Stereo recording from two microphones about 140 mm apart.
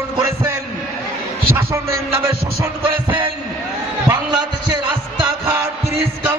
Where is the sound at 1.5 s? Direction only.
20° right (ahead or behind).